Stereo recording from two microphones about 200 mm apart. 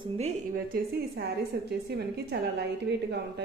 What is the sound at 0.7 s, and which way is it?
A woman's voice, 55° right (ahead or behind).